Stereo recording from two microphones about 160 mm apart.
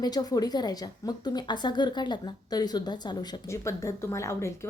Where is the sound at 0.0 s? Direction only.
25° left (ahead or behind).